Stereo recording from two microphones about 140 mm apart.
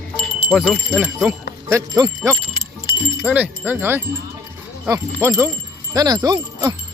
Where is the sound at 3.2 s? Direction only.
10° right (ahead or behind); by 6.7 s 30° right (ahead or behind).